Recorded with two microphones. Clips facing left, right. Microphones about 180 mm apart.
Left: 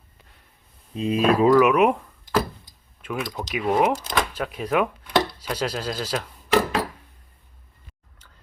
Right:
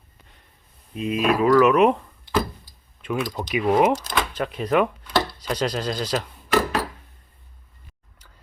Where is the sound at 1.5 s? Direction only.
10° left (ahead or behind).